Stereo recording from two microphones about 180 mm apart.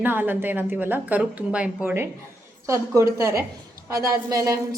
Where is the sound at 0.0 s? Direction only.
10° right (ahead or behind).